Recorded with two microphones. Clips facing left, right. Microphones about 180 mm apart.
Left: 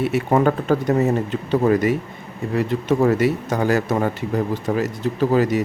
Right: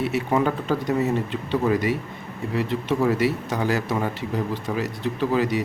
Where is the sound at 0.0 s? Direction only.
50° left (ahead or behind).